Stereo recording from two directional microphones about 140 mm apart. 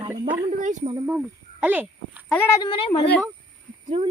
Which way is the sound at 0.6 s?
60° right (ahead or behind).